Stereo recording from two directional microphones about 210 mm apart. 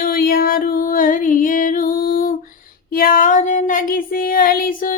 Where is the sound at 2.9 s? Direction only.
45° left (ahead or behind).